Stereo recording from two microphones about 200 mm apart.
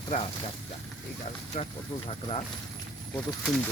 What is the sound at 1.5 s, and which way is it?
Speech, 35° left (ahead or behind).